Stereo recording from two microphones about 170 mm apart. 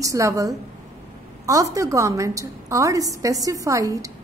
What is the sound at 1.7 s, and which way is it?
A woman's voice, 20° right (ahead or behind).